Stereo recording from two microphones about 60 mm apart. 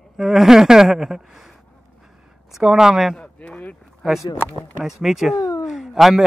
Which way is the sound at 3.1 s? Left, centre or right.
Centre.